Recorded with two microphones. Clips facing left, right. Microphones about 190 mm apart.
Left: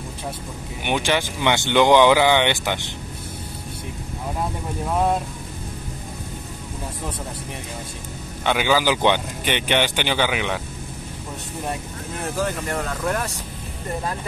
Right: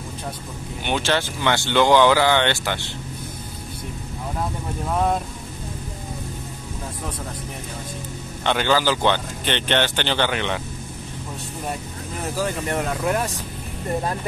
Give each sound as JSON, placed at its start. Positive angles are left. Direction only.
{"t": 0.8, "sound": "speech", "side_deg": 15}
{"t": 4.8, "sound": "speech", "side_deg": 5}
{"t": 8.5, "sound": "speech", "side_deg": 10}
{"t": 12.6, "sound": "speech", "side_deg": -15}